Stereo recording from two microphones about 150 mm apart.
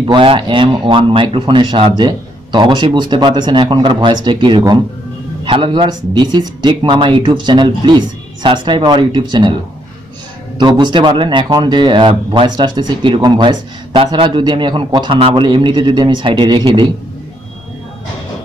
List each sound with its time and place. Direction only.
0.0 s a man's voice: 35° right (ahead or behind)
10.6 s a man's voice: 30° right (ahead or behind)